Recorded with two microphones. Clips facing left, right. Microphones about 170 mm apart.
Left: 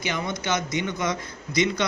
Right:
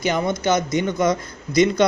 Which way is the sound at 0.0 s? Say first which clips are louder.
Right 8 dB; 45° right (ahead or behind).